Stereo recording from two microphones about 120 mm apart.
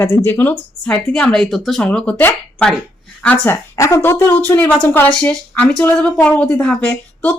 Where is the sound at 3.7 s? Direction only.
25° left (ahead or behind).